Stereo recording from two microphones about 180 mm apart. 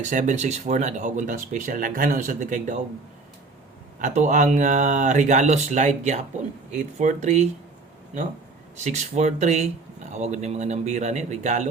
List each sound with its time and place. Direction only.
0.0 s speech: 45° right (ahead or behind)
4.0 s speech: 45° right (ahead or behind)
8.7 s speech: 40° right (ahead or behind)